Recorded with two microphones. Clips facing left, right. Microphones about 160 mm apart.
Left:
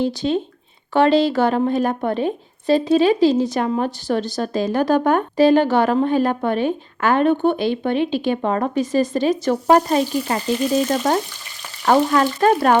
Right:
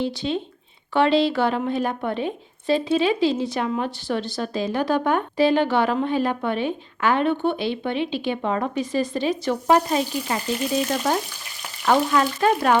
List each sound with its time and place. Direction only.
0.0 s a woman's voice: 45° left (ahead or behind)
11.9 s a woman's voice: 45° left (ahead or behind)